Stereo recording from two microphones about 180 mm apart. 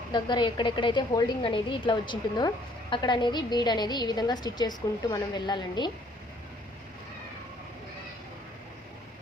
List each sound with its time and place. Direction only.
0.1 s a woman's voice: 25° left (ahead or behind)